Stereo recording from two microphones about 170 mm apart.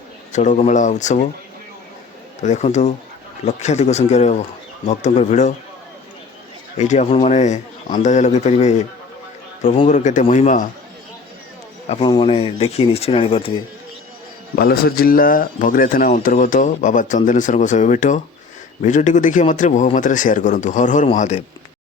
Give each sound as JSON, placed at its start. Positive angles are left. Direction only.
{"t": 0.3, "sound": "speech", "side_deg": 45}
{"t": 2.4, "sound": "speech", "side_deg": 45}
{"t": 6.7, "sound": "speech", "side_deg": 45}
{"t": 11.9, "sound": "speech", "side_deg": 30}
{"t": 14.5, "sound": "speech", "side_deg": 65}